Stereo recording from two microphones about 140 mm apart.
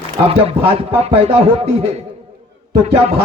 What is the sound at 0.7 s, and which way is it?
A man's voice, 40° right (ahead or behind).